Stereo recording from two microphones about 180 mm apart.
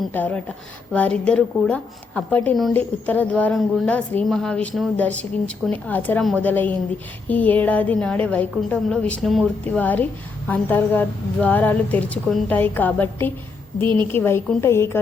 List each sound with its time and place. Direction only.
0.1 s a woman's voice: 10° left (ahead or behind)
13.8 s a woman's voice: 25° right (ahead or behind)
14.1 s a woman's voice: 15° left (ahead or behind)